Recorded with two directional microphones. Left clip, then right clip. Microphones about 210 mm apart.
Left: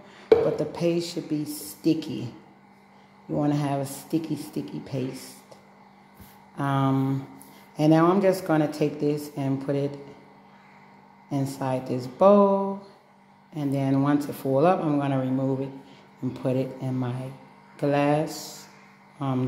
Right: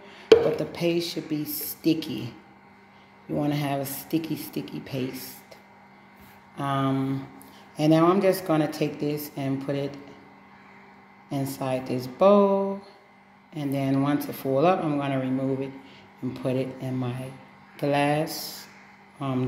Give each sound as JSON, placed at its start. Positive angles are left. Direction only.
{"t": 0.6, "sound": "speech", "side_deg": 0}
{"t": 3.3, "sound": "speech", "side_deg": 0}
{"t": 6.5, "sound": "speech", "side_deg": 5}
{"t": 11.2, "sound": "speech", "side_deg": 0}